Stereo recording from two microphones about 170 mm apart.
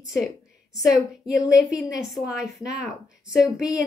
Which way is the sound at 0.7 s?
Centre (ahead or behind).